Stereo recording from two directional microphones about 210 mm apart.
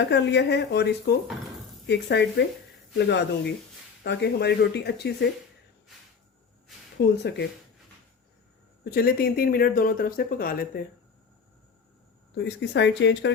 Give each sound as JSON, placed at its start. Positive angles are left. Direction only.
{"t": 0.1, "sound": "speech", "side_deg": 55}
{"t": 7.2, "sound": "speech", "side_deg": 55}
{"t": 8.8, "sound": "speech", "side_deg": 45}
{"t": 12.4, "sound": "speech", "side_deg": 55}